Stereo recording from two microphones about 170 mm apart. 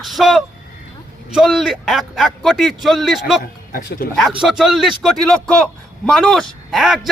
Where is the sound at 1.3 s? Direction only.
Centre (ahead or behind).